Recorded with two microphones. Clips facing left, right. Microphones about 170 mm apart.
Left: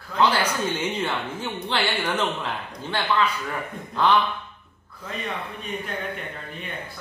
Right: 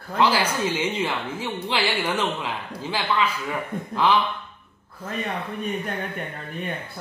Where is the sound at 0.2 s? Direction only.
5° right (ahead or behind).